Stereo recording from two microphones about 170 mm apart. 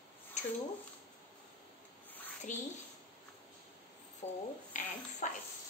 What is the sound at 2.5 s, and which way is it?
Speech, 50° left (ahead or behind).